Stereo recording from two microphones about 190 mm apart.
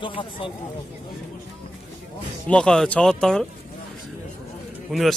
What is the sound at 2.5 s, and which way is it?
Speech, 5° left (ahead or behind).